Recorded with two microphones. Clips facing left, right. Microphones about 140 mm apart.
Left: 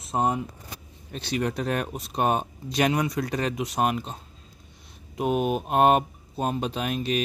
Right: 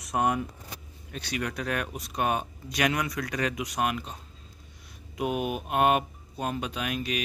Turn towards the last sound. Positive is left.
turn(degrees=30)  # may be behind; listen again after turning